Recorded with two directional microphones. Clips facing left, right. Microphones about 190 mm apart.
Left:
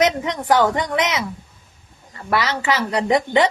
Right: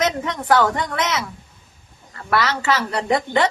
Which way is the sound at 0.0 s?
15° left (ahead or behind).